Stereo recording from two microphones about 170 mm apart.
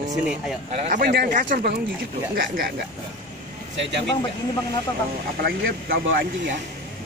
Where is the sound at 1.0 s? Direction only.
65° right (ahead or behind).